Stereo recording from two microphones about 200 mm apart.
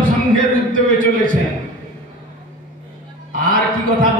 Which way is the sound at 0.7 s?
40° right (ahead or behind).